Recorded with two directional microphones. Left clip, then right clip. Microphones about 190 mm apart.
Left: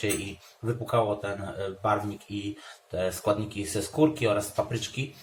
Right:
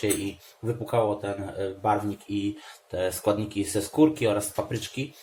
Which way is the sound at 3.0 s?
35° right (ahead or behind).